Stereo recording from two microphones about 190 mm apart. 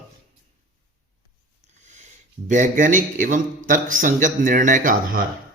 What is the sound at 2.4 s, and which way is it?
Speech, 40° right (ahead or behind).